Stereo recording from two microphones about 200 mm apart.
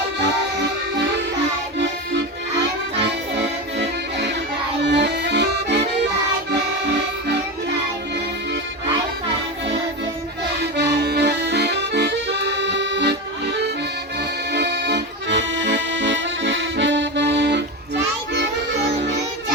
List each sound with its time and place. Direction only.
0.2 s music: 60° right (ahead or behind)
3.0 s accordion: 60° right (ahead or behind)
10.6 s accordion: 60° right (ahead or behind)